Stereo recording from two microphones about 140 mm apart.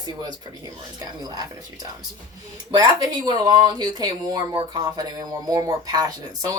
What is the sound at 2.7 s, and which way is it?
Speech, 30° right (ahead or behind).